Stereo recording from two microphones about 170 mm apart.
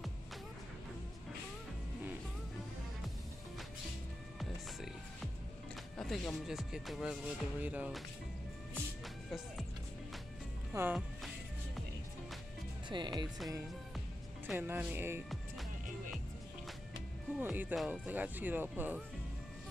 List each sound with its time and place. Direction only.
4.4 s music: centre (ahead or behind)
5.9 s speech: 5° left (ahead or behind)
10.7 s music: 10° right (ahead or behind)
12.9 s speech: 25° right (ahead or behind)
14.5 s speech: 10° right (ahead or behind)
17.4 s speech: 10° right (ahead or behind)